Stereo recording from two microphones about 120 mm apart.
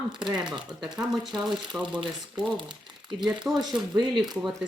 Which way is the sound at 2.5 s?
40° right (ahead or behind).